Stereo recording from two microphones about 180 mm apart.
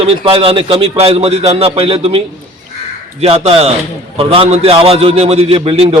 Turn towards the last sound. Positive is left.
turn(degrees=-30)  # may be behind; listen again after turning